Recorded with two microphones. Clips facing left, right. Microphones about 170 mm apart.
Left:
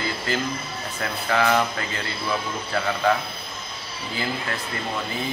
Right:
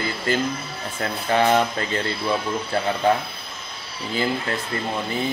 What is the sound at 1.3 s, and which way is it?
A man's voice, 25° right (ahead or behind).